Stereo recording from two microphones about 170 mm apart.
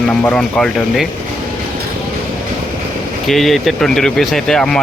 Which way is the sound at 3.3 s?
Centre (ahead or behind).